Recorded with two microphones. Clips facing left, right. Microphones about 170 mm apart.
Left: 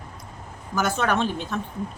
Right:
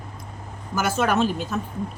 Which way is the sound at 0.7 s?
5° right (ahead or behind).